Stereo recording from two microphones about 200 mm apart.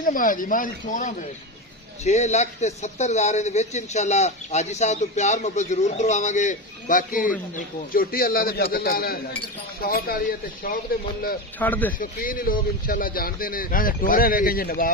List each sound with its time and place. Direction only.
0.0 s speech: 45° left (ahead or behind)
11.6 s a man's voice: 10° left (ahead or behind)
12.0 s speech: 45° left (ahead or behind)